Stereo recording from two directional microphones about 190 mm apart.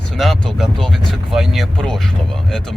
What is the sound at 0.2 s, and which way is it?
Speech, centre (ahead or behind).